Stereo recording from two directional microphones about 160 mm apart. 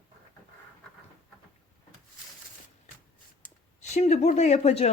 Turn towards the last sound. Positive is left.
turn(degrees=40)  # may be behind; listen again after turning